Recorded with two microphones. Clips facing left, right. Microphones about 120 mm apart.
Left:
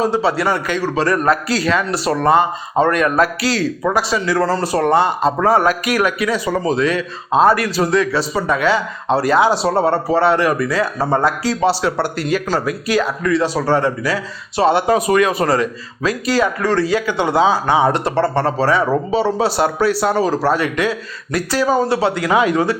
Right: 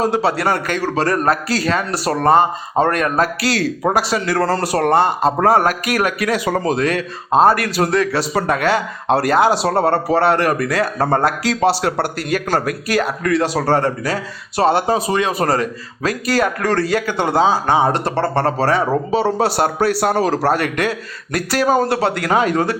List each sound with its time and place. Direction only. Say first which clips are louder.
0.0 s a man's voice: even; 55° right (ahead or behind); by 3.2 s 40° right (ahead or behind)
3.4 s a man's voice: even; 65° right (ahead or behind); by 8.2 s 50° right (ahead or behind)
8.2 s a man's voice: even; 65° right (ahead or behind)
13.7 s speech: even; 45° right (ahead or behind)
15.3 s a man's voice: left 1 dB; 40° right (ahead or behind)
22.3 s a man's voice: left 1 dB; 40° right (ahead or behind)